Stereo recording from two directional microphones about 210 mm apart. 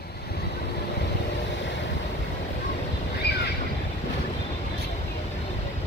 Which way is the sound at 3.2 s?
50° left (ahead or behind).